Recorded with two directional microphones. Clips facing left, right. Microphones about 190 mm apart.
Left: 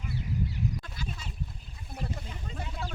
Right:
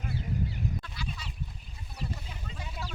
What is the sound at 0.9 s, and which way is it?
Duck, 45° left (ahead or behind).